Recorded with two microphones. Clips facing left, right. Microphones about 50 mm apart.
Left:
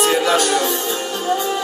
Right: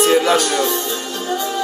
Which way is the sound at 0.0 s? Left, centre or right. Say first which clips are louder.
Right 2 dB; centre.